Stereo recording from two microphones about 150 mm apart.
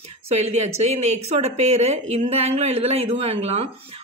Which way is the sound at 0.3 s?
45° right (ahead or behind).